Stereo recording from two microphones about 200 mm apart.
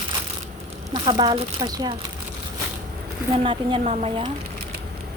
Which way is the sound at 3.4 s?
25° right (ahead or behind).